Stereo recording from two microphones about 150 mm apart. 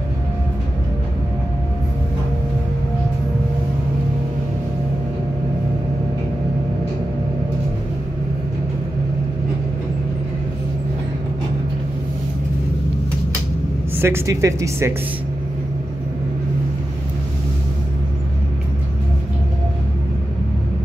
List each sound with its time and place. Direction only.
14.0 s speech: 20° right (ahead or behind)